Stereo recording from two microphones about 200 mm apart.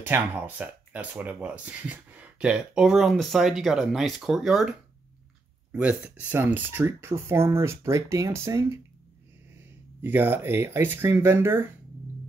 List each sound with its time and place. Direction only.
0.0 s speech: 10° right (ahead or behind)
10.0 s speech: 10° right (ahead or behind)